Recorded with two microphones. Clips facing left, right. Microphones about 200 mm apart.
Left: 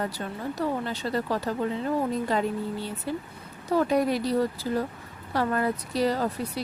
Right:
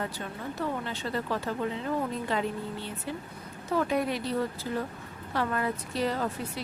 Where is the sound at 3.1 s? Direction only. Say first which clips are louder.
Left 4 dB; 40° left (ahead or behind).